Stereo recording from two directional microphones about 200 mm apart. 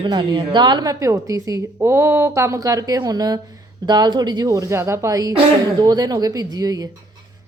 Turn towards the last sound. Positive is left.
turn(degrees=-15)  # may be behind; listen again after turning